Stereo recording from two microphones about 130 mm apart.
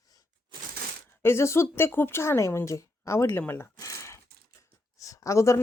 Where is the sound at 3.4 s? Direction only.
20° left (ahead or behind).